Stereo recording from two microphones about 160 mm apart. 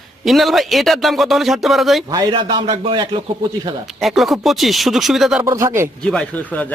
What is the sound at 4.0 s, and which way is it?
Speech, centre (ahead or behind).